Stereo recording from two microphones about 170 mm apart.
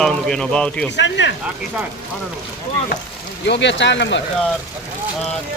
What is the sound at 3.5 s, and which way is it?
Speech, 90° left.